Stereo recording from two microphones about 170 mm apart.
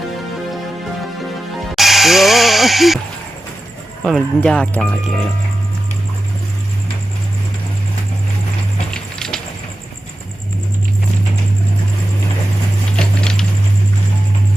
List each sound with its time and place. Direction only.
1.7 s music: centre (ahead or behind)
4.0 s speech: 5° left (ahead or behind)
8.9 s music: 5° left (ahead or behind)
13.0 s a sound: 5° left (ahead or behind)